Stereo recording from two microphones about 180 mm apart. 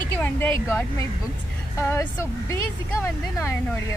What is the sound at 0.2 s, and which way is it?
Speech, 10° left (ahead or behind).